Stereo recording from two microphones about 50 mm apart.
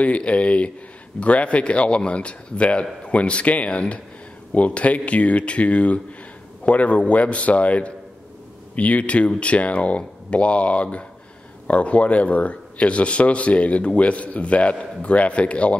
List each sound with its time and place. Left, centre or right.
0.0 s a man's voice: left